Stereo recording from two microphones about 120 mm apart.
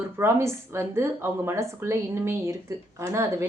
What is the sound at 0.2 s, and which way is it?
A woman's voice, 20° right (ahead or behind).